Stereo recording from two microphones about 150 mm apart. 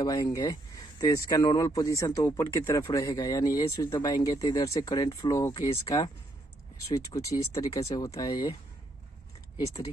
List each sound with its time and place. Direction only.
0.0 s speech: 25° left (ahead or behind)
7.2 s speech: 20° left (ahead or behind)